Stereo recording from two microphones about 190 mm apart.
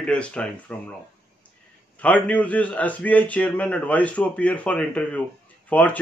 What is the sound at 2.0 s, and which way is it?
Speech, 5° left (ahead or behind).